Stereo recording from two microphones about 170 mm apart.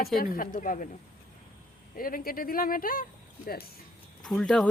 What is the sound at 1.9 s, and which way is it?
Speech, 55° left (ahead or behind).